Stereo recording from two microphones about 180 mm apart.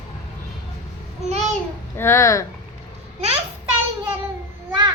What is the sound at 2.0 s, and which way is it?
Speech, 15° left (ahead or behind).